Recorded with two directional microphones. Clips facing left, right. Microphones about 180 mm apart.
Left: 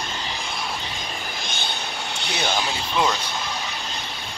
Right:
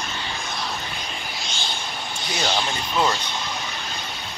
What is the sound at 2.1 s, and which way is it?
Vehicle, 70° left (ahead or behind).